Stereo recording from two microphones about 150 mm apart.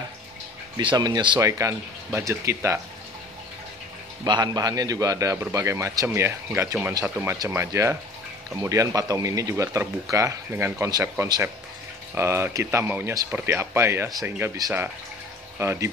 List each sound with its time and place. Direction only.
0.7 s a man's voice: 30° right (ahead or behind)
4.2 s a man's voice: 25° right (ahead or behind)